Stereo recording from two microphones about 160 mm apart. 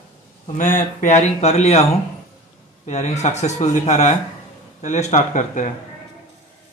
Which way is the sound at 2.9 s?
45° left (ahead or behind).